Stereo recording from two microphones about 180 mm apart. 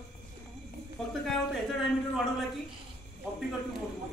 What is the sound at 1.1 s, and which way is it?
A man's voice, centre (ahead or behind).